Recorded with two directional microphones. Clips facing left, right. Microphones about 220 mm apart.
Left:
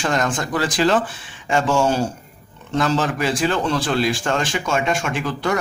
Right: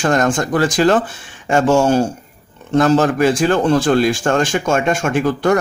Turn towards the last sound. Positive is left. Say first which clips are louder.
# right 7 dB
turn(degrees=-45)  # may be behind; listen again after turning